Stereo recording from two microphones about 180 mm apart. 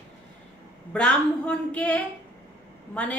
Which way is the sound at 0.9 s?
5° left (ahead or behind).